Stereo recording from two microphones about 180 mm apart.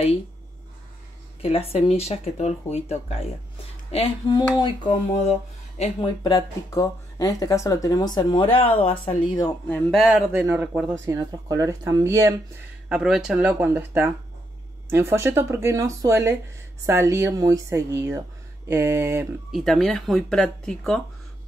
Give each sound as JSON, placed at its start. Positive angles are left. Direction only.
{"t": 1.4, "sound": "speech", "side_deg": 35}
{"t": 6.2, "sound": "speech", "side_deg": 20}
{"t": 9.8, "sound": "speech", "side_deg": 0}
{"t": 10.3, "sound": "speech", "side_deg": -15}
{"t": 12.8, "sound": "speech", "side_deg": -5}
{"t": 19.5, "sound": "speech", "side_deg": 0}